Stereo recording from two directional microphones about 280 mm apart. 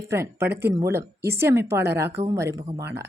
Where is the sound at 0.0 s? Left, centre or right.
Centre.